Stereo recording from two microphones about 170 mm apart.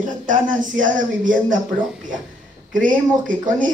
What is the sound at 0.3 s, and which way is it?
A woman's voice, 50° right (ahead or behind).